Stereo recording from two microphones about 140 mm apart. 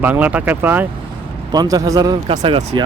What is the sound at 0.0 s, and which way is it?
Speech, 10° right (ahead or behind).